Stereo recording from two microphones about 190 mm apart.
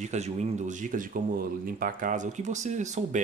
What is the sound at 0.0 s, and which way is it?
Speech, 35° right (ahead or behind).